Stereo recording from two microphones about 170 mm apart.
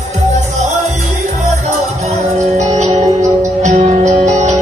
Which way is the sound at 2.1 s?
40° right (ahead or behind).